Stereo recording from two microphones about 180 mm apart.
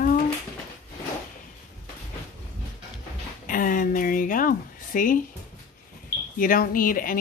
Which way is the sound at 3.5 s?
50° left (ahead or behind).